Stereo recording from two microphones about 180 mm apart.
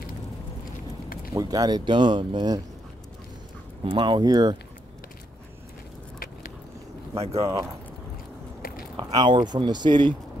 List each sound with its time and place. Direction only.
1.3 s speech: 20° right (ahead or behind)
3.8 s speech: 25° right (ahead or behind)
6.1 s vehicle: 50° left (ahead or behind)
7.3 s speech: 20° right (ahead or behind)
8.9 s speech: 25° right (ahead or behind)